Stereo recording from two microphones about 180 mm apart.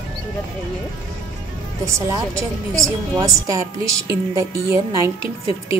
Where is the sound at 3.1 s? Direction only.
20° right (ahead or behind).